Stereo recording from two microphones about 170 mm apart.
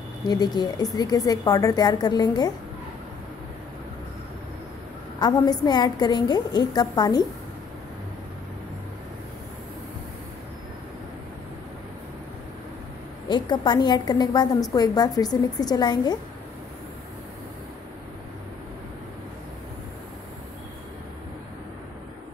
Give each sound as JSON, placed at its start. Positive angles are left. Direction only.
{"t": 0.3, "sound": "a woman's voice", "side_deg": 25}
{"t": 5.2, "sound": "a woman's voice", "side_deg": 25}
{"t": 13.3, "sound": "a woman's voice", "side_deg": 25}